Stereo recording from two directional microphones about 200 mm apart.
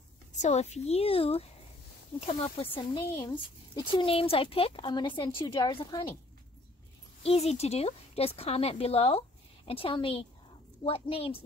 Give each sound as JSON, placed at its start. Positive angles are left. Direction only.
{"t": 0.4, "sound": "a woman's voice", "side_deg": 35}
{"t": 7.2, "sound": "a woman's voice", "side_deg": 30}